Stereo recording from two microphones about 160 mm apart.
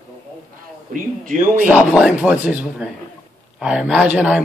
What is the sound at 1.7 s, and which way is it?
Speech, 10° right (ahead or behind).